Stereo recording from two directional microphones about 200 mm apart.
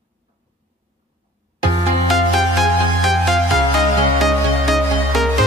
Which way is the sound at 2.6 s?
Centre (ahead or behind).